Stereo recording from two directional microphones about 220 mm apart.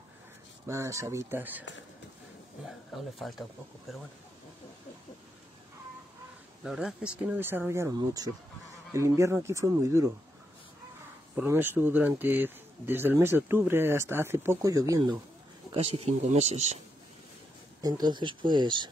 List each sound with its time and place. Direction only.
0.7 s speech: 15° right (ahead or behind)
2.9 s speech: centre (ahead or behind)
6.6 s speech: centre (ahead or behind)
11.3 s speech: 10° right (ahead or behind); by 16.8 s 30° right (ahead or behind)
17.8 s speech: 20° right (ahead or behind)